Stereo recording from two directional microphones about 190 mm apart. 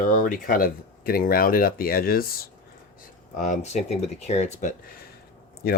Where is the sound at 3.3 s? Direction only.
40° left (ahead or behind).